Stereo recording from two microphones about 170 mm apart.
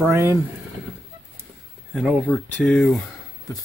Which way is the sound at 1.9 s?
5° right (ahead or behind).